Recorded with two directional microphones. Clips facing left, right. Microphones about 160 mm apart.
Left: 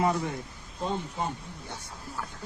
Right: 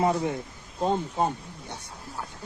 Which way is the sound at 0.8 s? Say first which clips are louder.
Right 6 dB; 40° right (ahead or behind).